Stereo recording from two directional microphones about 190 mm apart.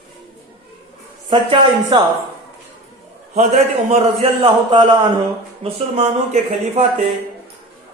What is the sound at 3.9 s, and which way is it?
A man's voice, 30° right (ahead or behind).